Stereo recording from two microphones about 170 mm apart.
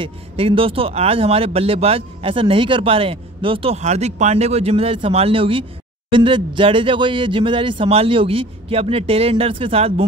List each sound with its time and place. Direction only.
0.0 s speech: 30° right (ahead or behind)